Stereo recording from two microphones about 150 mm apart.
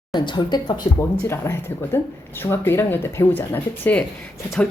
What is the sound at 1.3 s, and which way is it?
Speech, 15° left (ahead or behind).